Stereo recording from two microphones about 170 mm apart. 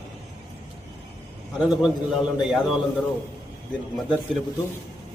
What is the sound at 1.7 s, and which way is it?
A man's voice, centre (ahead or behind).